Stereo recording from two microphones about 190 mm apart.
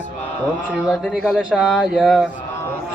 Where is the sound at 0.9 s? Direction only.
5° right (ahead or behind).